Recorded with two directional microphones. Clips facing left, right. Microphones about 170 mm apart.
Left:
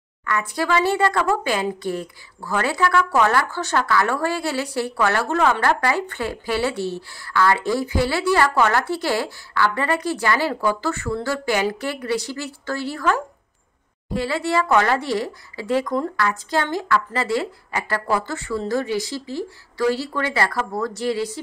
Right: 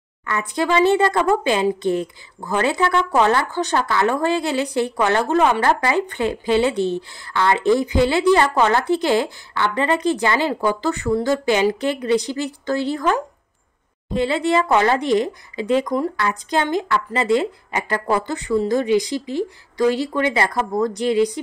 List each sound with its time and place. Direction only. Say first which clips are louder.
0.3 s speech: right 2 dB; 20° right (ahead or behind)